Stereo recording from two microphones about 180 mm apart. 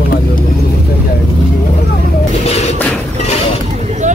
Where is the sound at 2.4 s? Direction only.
35° left (ahead or behind).